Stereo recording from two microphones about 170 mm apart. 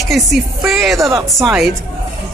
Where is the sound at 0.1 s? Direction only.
Centre (ahead or behind).